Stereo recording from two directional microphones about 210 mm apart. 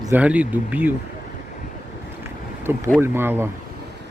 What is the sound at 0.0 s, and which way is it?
Speech, 10° right (ahead or behind).